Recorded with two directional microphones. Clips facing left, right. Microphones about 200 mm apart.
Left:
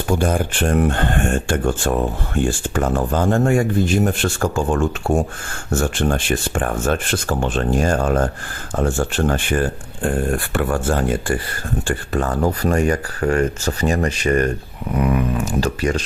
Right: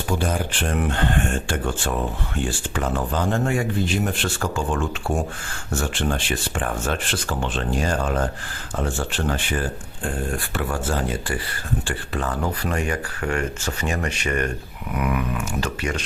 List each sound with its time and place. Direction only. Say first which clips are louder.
0.2 s speech: left 5 dB; 50° left (ahead or behind)